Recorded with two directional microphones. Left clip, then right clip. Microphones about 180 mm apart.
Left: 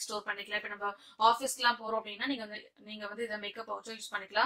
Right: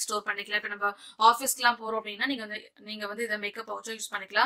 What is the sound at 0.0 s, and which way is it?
A woman's voice, 25° right (ahead or behind).